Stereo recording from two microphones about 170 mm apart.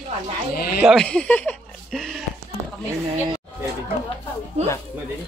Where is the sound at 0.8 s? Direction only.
Centre (ahead or behind).